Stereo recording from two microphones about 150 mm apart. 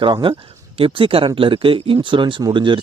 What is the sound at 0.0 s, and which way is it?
Speech, 35° right (ahead or behind).